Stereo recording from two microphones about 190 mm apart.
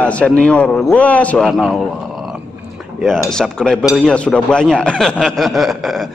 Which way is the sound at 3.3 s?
5° left (ahead or behind).